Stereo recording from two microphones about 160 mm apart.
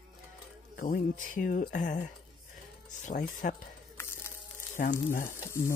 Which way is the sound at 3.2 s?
50° left (ahead or behind).